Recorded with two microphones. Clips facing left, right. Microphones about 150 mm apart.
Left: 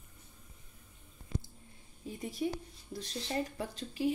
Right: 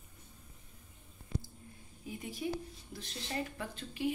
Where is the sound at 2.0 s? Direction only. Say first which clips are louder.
Left 3 dB; 35° left (ahead or behind).